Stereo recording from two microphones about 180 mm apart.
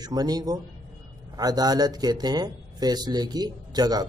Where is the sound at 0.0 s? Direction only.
20° right (ahead or behind).